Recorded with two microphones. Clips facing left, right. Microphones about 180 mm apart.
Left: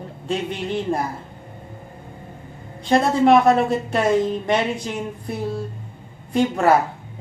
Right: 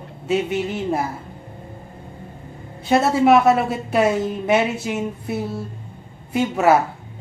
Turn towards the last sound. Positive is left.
turn(degrees=-5)  # may be behind; listen again after turning